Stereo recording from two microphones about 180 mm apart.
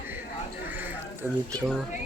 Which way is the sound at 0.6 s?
10° right (ahead or behind).